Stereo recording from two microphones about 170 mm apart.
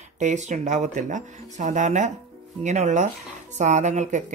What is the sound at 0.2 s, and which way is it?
A woman's voice, 45° right (ahead or behind).